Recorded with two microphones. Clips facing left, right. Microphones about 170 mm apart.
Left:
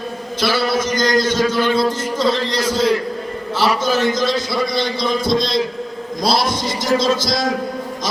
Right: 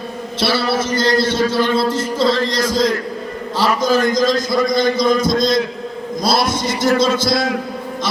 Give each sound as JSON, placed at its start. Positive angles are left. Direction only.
{"t": 0.9, "sound": "a man's voice", "side_deg": -30}